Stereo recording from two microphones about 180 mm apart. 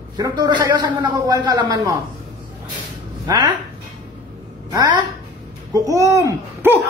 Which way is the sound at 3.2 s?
25° right (ahead or behind).